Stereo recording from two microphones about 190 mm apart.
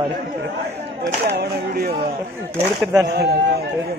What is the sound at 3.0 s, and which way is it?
Speech, 60° right (ahead or behind).